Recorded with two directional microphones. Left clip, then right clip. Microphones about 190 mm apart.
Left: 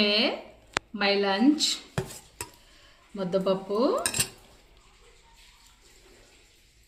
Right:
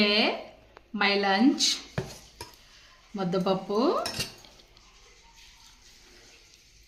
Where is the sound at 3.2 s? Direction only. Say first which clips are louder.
Left 1 dB; 60° right (ahead or behind).